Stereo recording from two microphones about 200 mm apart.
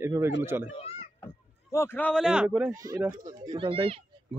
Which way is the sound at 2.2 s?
5° right (ahead or behind).